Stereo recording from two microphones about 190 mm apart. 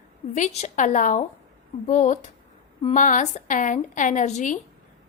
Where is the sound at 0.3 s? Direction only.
40° left (ahead or behind).